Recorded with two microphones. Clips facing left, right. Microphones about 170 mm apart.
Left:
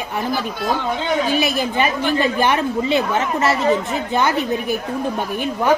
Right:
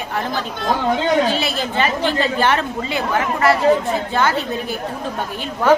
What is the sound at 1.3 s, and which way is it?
A woman's voice, 15° left (ahead or behind).